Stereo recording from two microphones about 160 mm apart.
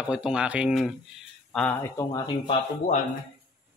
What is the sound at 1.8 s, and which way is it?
Speech, 25° left (ahead or behind).